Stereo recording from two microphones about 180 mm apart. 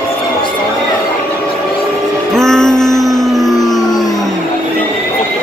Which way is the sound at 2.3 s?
5° left (ahead or behind).